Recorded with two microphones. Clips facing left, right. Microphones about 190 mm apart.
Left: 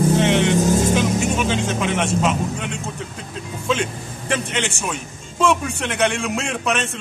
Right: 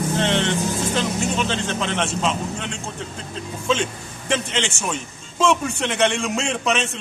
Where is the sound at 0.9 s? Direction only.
10° left (ahead or behind).